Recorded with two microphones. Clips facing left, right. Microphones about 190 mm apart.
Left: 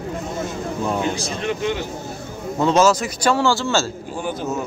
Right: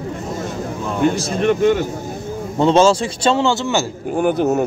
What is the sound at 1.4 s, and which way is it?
Speech, 55° right (ahead or behind).